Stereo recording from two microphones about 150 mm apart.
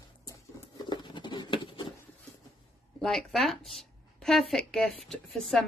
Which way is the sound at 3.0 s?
Centre (ahead or behind).